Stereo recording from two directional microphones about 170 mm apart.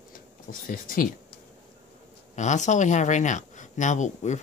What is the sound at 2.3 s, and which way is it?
Speech, 45° left (ahead or behind).